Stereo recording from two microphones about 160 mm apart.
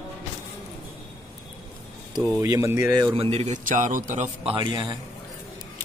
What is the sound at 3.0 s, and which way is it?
A man's voice, 35° right (ahead or behind).